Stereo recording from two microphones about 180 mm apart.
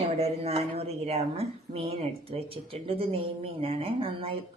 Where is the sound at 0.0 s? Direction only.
35° right (ahead or behind).